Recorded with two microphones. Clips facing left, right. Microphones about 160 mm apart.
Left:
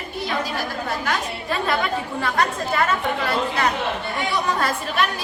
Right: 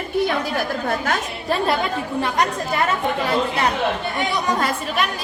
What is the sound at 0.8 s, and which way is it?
Speech, 45° right (ahead or behind).